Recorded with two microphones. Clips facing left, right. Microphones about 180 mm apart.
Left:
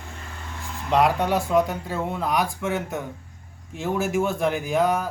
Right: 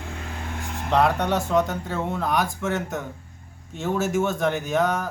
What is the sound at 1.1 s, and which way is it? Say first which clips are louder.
Speech: left 1 dB; 5° left (ahead or behind).